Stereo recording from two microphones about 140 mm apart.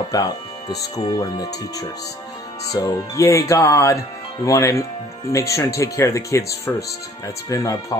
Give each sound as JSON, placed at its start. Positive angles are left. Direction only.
{"t": 0.1, "sound": "speech", "side_deg": 25}